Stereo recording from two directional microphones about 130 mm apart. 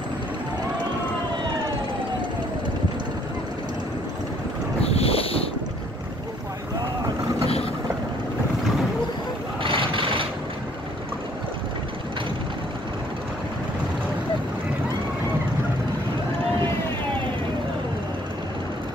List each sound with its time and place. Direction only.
4.8 s boat: 50° left (ahead or behind)
9.6 s vehicle: 40° right (ahead or behind)